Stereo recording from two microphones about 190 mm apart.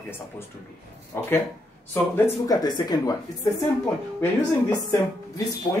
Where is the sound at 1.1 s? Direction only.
10° left (ahead or behind).